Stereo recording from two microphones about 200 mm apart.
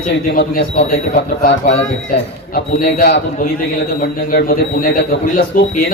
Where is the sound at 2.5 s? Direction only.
45° left (ahead or behind).